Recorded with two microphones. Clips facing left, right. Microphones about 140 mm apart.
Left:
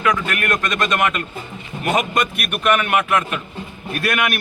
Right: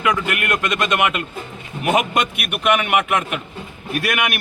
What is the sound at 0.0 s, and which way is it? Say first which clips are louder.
A man's voice: even; 15° right (ahead or behind).